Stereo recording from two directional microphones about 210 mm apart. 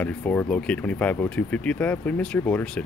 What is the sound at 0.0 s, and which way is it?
Speech, 10° left (ahead or behind).